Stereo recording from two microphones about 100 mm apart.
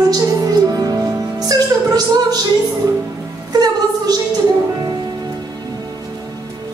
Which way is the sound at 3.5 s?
40° right (ahead or behind).